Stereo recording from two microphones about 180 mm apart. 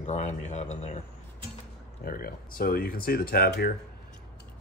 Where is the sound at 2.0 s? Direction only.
55° left (ahead or behind).